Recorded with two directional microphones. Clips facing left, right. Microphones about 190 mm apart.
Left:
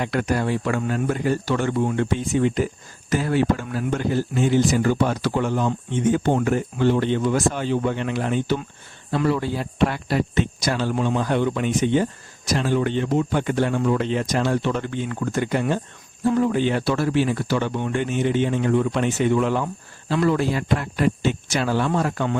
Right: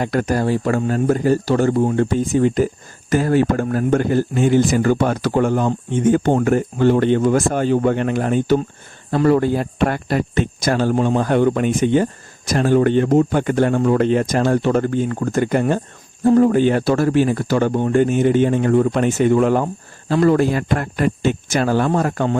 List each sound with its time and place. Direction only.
0.0 s a man's voice: 40° right (ahead or behind)